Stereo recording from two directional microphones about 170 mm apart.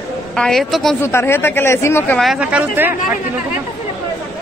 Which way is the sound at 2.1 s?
5° right (ahead or behind).